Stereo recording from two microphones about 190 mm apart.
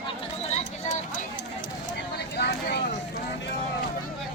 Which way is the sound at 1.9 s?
60° left (ahead or behind).